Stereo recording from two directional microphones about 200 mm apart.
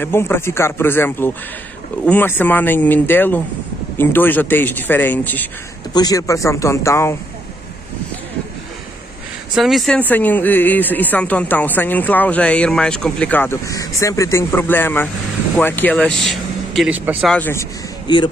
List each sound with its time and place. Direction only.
0.0 s speech: 10° left (ahead or behind)
9.6 s speech: centre (ahead or behind)
17.3 s speech: 10° left (ahead or behind)
18.0 s speech: 20° left (ahead or behind)